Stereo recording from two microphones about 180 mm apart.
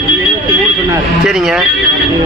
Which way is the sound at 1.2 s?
Centre (ahead or behind).